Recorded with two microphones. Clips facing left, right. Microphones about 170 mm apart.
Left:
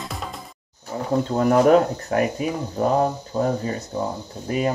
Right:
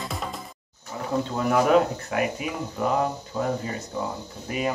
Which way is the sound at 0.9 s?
40° left (ahead or behind).